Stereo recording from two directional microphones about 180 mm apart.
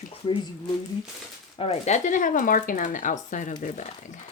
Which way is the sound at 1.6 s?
35° left (ahead or behind).